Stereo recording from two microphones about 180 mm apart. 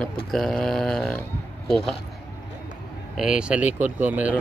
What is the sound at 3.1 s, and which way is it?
Speech, 5° right (ahead or behind).